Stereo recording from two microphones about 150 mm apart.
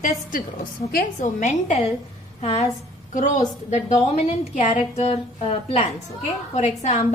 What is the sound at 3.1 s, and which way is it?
A woman's voice, 55° left (ahead or behind).